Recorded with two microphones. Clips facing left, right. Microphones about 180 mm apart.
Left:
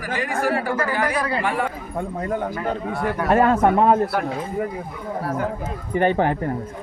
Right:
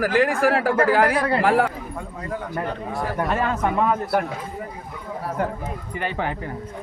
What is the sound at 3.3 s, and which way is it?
Speech, 50° left (ahead or behind).